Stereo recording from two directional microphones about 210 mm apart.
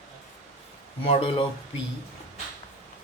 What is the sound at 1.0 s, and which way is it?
Speech, 25° left (ahead or behind).